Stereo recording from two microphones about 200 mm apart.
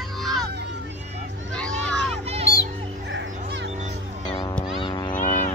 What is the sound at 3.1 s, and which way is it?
Music, 60° right (ahead or behind).